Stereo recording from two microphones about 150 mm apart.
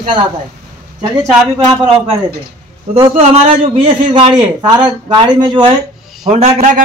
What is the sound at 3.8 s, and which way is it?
A man's voice, 30° right (ahead or behind).